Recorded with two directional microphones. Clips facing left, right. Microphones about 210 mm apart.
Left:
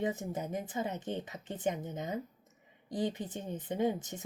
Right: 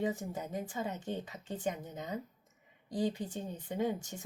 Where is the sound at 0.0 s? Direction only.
20° left (ahead or behind).